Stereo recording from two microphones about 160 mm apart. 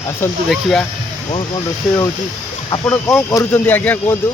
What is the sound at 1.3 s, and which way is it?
Speech, 35° left (ahead or behind).